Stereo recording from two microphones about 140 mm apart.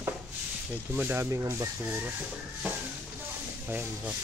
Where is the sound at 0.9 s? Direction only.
15° right (ahead or behind).